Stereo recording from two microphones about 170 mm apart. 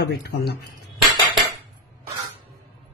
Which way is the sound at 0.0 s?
75° left (ahead or behind).